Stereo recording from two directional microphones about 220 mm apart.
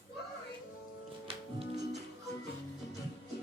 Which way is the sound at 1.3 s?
25° right (ahead or behind).